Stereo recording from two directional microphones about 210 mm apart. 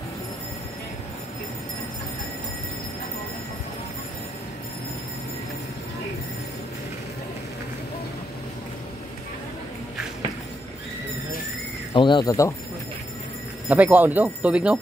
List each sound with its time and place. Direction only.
11.9 s speech: 20° left (ahead or behind)
13.7 s speech: 10° right (ahead or behind)